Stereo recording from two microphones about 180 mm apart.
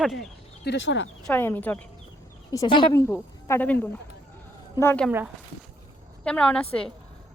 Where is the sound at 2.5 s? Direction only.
25° left (ahead or behind).